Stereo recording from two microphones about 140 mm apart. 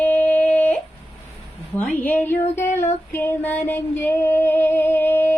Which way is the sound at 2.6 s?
15° left (ahead or behind).